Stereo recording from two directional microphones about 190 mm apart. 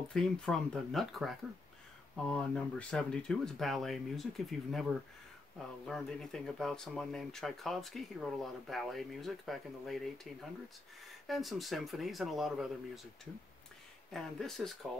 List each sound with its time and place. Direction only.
0.1 s speech: centre (ahead or behind)